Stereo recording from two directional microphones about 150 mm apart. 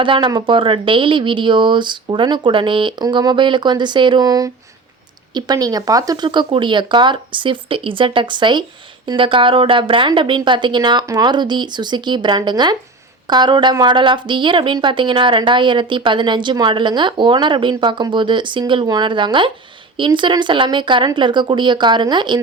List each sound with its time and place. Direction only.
0.0 s a woman's voice: 35° right (ahead or behind)